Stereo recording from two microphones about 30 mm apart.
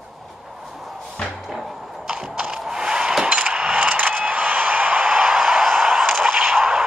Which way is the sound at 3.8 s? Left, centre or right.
Right.